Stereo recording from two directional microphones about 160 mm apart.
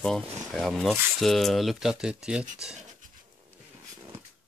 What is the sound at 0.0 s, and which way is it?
Speech, 5° left (ahead or behind).